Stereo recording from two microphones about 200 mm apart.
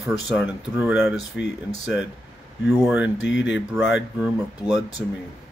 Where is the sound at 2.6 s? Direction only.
10° right (ahead or behind).